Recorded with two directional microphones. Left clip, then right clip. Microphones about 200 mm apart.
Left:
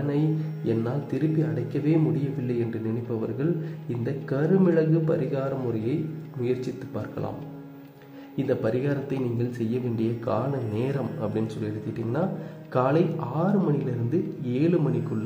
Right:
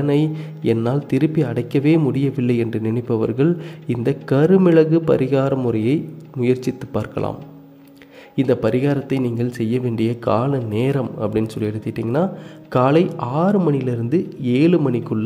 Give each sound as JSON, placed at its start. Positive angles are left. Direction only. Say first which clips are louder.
{"t": 0.7, "sound": "speech", "louder": "right 9 dB", "side_deg": -35}
{"t": 8.4, "sound": "speech", "louder": "right 8 dB", "side_deg": -35}